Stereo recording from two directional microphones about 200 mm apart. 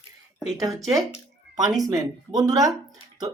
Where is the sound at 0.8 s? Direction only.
Centre (ahead or behind).